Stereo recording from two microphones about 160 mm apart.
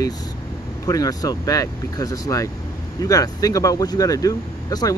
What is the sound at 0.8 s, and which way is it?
Speech, 20° left (ahead or behind).